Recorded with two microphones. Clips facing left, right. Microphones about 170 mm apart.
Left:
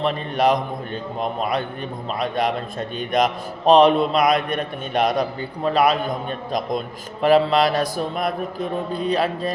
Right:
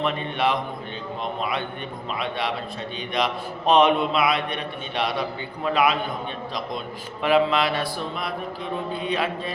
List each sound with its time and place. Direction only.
0.0 s a man's voice: 40° left (ahead or behind)